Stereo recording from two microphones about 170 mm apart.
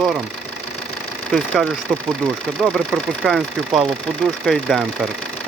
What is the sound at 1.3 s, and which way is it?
Speech, centre (ahead or behind).